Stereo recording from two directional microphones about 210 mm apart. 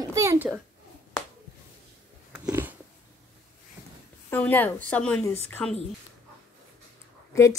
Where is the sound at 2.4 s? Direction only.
10° right (ahead or behind).